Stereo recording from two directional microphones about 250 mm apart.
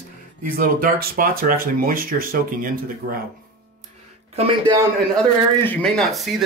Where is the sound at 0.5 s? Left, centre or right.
Right.